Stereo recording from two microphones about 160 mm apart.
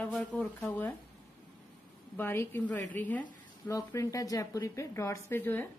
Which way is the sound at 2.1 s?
15° left (ahead or behind).